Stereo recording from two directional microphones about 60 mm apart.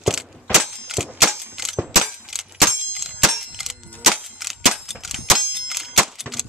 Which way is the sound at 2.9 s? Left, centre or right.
Centre.